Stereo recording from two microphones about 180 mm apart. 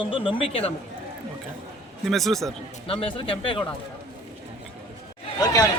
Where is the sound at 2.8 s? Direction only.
30° left (ahead or behind).